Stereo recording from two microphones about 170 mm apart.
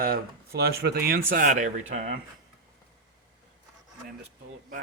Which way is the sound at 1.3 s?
55° right (ahead or behind).